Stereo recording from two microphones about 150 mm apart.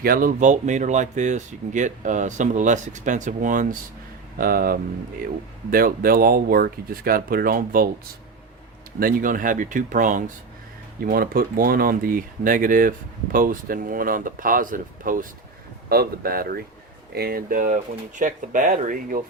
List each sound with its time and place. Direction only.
0.0 s speech: 75° right (ahead or behind)
4.4 s speech: 75° right (ahead or behind)
9.0 s speech: 70° right (ahead or behind)
11.0 s speech: 75° right (ahead or behind)
15.9 s speech: 85° right; by 19.2 s 65° right (ahead or behind)